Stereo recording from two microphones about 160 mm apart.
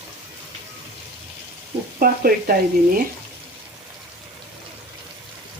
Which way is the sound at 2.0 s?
65° right (ahead or behind).